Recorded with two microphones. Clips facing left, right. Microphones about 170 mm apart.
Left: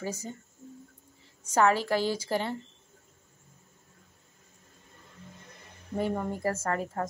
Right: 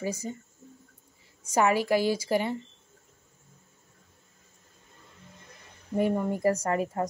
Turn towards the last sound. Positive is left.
turn(degrees=-15)  # may be behind; listen again after turning